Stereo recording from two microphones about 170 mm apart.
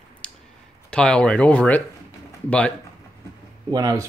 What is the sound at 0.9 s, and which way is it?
Speech, 5° left (ahead or behind).